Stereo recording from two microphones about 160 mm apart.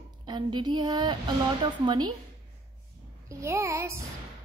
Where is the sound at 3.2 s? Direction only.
20° right (ahead or behind).